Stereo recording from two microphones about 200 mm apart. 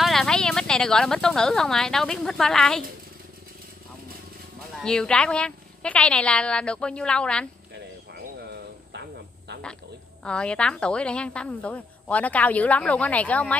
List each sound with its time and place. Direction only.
0.0 s speech: centre (ahead or behind)
4.8 s speech: 5° left (ahead or behind)
8.1 s a sound: 55° right (ahead or behind)
10.2 s a woman's voice: 5° left (ahead or behind)